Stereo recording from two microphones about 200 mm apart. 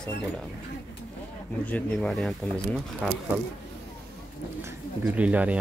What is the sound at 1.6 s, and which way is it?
Speech, 5° left (ahead or behind).